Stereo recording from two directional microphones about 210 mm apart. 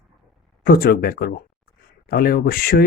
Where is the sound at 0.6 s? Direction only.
45° left (ahead or behind).